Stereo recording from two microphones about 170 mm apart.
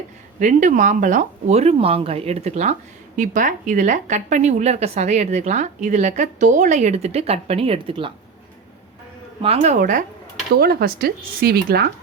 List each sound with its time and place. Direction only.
0.3 s a woman's voice: 50° right (ahead or behind); by 8.1 s 30° right (ahead or behind)
9.4 s a woman's voice: 40° right (ahead or behind)
10.5 s speech: 70° right (ahead or behind)